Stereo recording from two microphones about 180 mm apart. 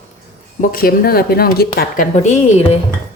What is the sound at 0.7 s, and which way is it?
Speech, 55° left (ahead or behind).